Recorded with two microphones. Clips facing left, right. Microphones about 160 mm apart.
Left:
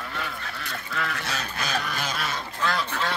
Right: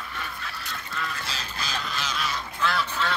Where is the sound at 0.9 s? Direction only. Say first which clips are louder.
Left 4 dB; 70° left (ahead or behind); by 2.8 s 45° left (ahead or behind).